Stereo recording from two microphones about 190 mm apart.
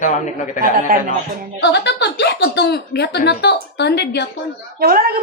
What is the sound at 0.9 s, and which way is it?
Speech, 50° right (ahead or behind).